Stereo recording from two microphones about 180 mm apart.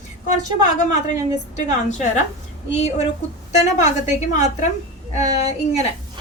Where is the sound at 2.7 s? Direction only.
40° left (ahead or behind).